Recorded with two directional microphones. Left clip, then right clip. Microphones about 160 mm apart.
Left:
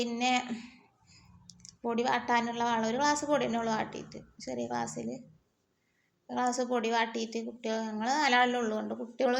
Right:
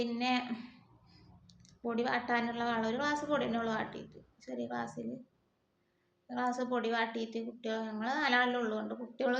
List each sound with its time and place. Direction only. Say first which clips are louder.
0.0 s a woman's voice: left 4 dB; 35° left (ahead or behind)
6.2 s a woman's voice: left 4 dB; 35° left (ahead or behind)